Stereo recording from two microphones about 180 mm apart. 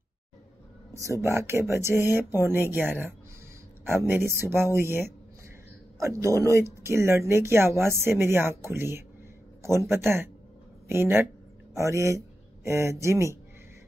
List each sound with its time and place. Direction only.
1.2 s a man's voice: 15° right (ahead or behind)